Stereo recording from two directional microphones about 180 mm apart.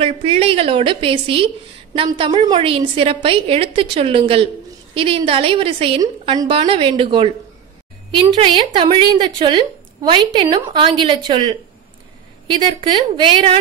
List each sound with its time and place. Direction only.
0.0 s a woman's voice: 35° right (ahead or behind)
8.4 s a woman's voice: 25° right (ahead or behind)